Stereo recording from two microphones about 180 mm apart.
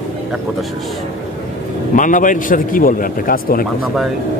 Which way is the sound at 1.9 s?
45° left (ahead or behind).